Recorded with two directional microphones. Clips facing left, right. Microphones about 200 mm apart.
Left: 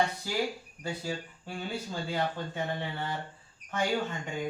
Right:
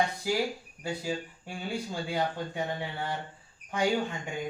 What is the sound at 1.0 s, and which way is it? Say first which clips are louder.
Speech: right 2 dB; 10° right (ahead or behind).